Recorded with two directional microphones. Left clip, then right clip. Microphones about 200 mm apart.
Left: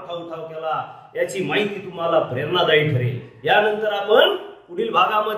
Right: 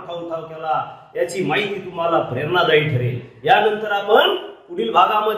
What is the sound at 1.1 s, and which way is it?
A man's voice, 15° right (ahead or behind).